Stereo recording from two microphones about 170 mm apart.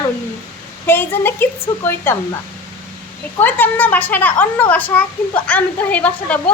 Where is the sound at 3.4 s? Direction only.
10° left (ahead or behind).